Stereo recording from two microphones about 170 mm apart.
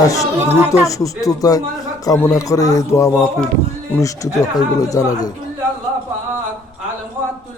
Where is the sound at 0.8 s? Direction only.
20° left (ahead or behind).